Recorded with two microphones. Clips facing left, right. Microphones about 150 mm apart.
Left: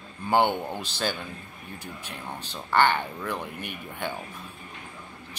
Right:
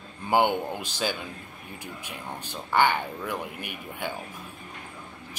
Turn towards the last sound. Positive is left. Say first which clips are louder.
# left 1 dB
turn(degrees=-10)  # may be behind; listen again after turning